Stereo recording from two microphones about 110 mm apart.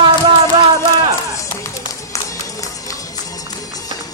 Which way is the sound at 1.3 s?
25° left (ahead or behind).